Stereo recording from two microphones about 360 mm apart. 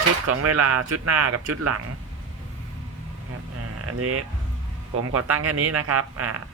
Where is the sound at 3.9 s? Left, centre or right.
Right.